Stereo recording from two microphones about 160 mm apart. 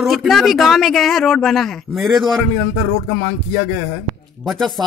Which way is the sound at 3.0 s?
85° left.